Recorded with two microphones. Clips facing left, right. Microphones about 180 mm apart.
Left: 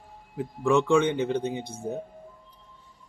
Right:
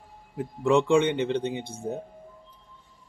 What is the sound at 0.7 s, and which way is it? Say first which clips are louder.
Speech: right 1 dB; 25° right (ahead or behind).